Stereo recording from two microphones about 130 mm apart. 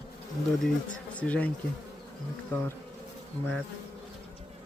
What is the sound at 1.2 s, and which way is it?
Speech, 10° left (ahead or behind).